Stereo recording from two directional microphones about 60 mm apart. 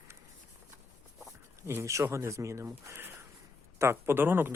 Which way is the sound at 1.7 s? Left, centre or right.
Right.